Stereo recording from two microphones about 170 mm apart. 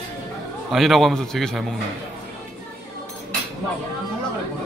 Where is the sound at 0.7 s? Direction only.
Centre (ahead or behind).